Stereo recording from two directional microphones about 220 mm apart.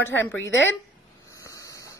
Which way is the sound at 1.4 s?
15° left (ahead or behind).